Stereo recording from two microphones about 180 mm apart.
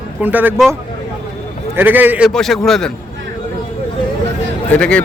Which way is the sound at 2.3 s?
Centre (ahead or behind).